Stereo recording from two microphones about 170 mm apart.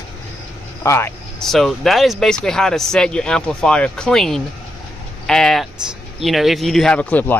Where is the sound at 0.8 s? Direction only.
15° left (ahead or behind).